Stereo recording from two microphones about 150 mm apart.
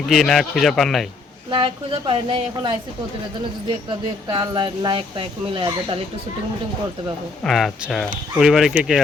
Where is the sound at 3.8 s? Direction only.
30° right (ahead or behind).